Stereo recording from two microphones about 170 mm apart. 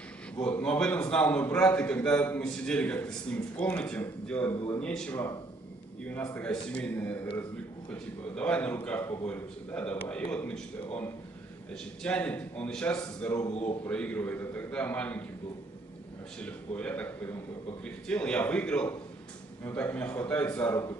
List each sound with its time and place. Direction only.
0.4 s a man's voice: 5° left (ahead or behind)
6.3 s a man's voice: 10° left (ahead or behind)
11.7 s a man's voice: 5° left (ahead or behind)
13.5 s speech: 40° left (ahead or behind)
13.8 s a man's voice: 10° left (ahead or behind)
16.3 s a man's voice: 5° left (ahead or behind)